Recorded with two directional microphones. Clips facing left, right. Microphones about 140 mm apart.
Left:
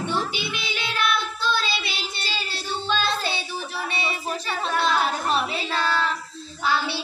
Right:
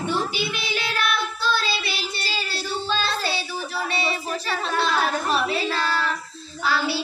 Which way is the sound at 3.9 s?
15° left (ahead or behind).